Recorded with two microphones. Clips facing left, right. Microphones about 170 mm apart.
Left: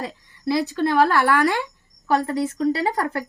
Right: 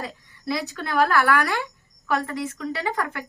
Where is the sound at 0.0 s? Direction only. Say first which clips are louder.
Left 5 dB; 30° left (ahead or behind).